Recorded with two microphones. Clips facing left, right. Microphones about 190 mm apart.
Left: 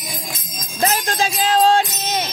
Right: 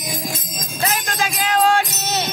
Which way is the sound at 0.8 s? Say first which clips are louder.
Left 3 dB; 30° left (ahead or behind).